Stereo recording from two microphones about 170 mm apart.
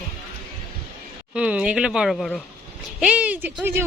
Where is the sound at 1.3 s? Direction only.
5° right (ahead or behind).